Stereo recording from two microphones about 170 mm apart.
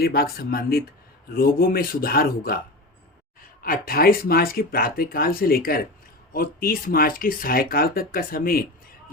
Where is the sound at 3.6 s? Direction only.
60° left (ahead or behind).